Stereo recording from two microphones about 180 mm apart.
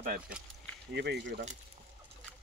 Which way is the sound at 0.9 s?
70° right (ahead or behind).